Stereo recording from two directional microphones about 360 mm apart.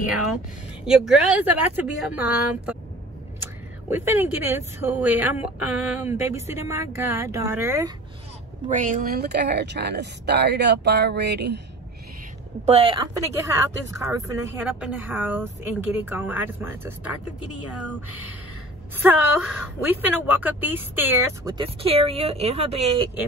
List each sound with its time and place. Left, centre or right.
0.8 s a woman's voice: centre
3.9 s a woman's voice: centre
8.6 s speech: right
12.6 s speech: centre
18.9 s a woman's voice: centre